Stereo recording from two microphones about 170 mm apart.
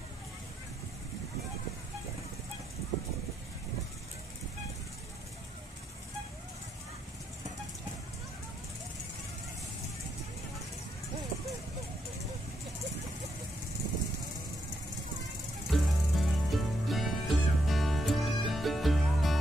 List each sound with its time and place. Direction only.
15.7 s music: centre (ahead or behind)